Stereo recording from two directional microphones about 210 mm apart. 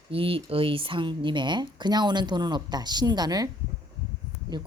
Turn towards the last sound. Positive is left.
turn(degrees=-20)  # may be behind; listen again after turning